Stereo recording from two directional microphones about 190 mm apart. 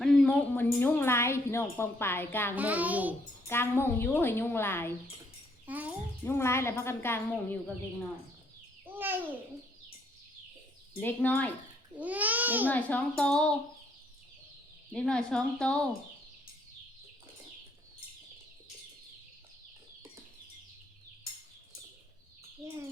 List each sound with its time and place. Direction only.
0.0 s a woman's voice: 5° left (ahead or behind)
2.6 s babbling: 10° right (ahead or behind)
3.5 s a woman's voice: 10° left (ahead or behind)
5.6 s a woman's voice: 10° right (ahead or behind)
6.2 s a woman's voice: 15° left (ahead or behind)
8.9 s babbling: 10° right (ahead or behind)
11.0 s a woman's voice: 10° left (ahead or behind)
11.9 s babbling: 10° right (ahead or behind)
12.6 s a woman's voice: 10° left (ahead or behind)
14.9 s a woman's voice: 5° left (ahead or behind)